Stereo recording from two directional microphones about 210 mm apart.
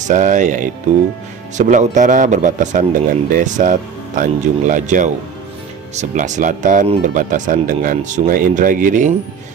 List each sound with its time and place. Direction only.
0.0 s a man's voice: 35° right (ahead or behind)